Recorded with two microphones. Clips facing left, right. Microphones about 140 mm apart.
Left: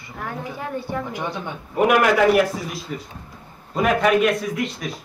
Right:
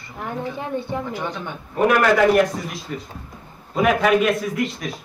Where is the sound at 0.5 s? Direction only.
20° right (ahead or behind).